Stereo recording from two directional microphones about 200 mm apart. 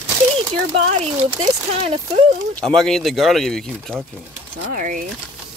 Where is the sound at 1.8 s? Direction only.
30° right (ahead or behind).